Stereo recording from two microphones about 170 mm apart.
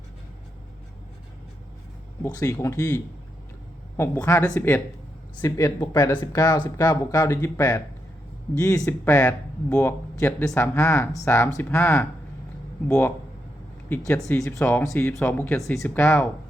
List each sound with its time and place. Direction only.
2.2 s speech: 20° left (ahead or behind)